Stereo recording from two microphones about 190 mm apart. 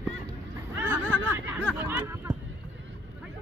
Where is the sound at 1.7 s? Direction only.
10° right (ahead or behind).